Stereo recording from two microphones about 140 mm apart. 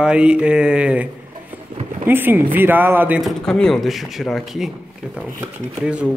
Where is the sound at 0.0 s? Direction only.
5° right (ahead or behind).